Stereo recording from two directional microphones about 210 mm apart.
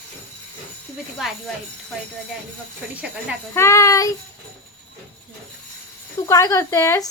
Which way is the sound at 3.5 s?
15° left (ahead or behind).